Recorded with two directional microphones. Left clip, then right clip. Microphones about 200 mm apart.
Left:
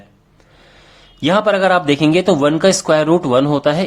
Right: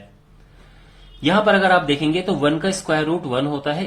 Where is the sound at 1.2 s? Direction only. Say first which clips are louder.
Left 3 dB; 40° left (ahead or behind).